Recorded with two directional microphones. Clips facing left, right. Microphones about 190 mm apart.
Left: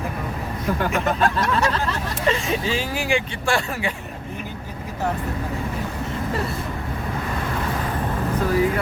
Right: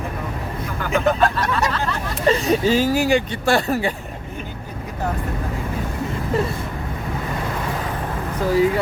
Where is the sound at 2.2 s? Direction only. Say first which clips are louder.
Right 6 dB; 40° right (ahead or behind).